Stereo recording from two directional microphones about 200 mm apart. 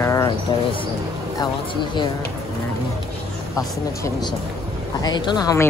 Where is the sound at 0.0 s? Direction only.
15° left (ahead or behind).